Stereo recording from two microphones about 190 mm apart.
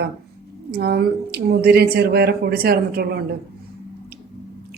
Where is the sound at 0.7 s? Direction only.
55° right (ahead or behind).